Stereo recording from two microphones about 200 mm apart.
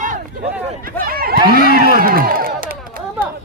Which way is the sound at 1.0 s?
50° right (ahead or behind).